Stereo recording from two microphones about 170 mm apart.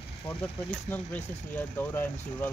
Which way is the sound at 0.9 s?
10° left (ahead or behind).